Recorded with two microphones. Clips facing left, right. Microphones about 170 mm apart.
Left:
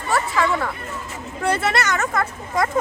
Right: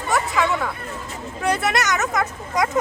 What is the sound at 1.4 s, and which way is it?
Speech, 15° right (ahead or behind).